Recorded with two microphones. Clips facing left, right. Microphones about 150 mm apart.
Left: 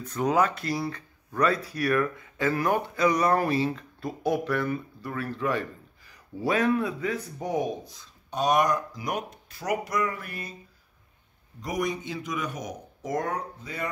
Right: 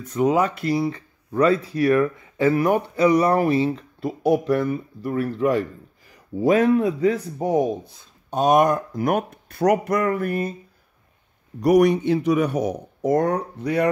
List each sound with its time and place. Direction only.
0.1 s speech: 20° right (ahead or behind)
6.5 s speech: 30° right (ahead or behind); by 10.5 s 50° right (ahead or behind)
11.6 s speech: 65° right (ahead or behind)